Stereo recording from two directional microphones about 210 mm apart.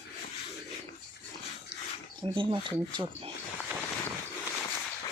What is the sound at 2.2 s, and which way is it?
Speech, 25° right (ahead or behind).